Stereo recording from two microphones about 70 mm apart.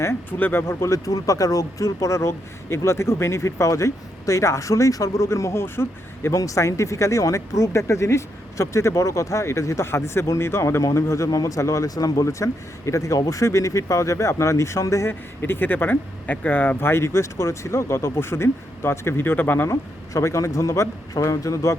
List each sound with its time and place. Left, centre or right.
0.3 s speech: left
0.9 s speech: left
6.3 s speech: left
15.4 s speech: left
19.6 s speech: left